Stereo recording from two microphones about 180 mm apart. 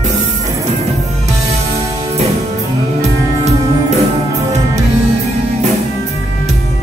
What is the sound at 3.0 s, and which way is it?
Music, 35° right (ahead or behind).